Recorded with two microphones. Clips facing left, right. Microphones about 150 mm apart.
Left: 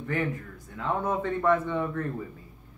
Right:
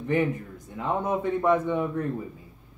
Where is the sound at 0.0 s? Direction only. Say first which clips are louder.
Right 5 dB; 20° right (ahead or behind).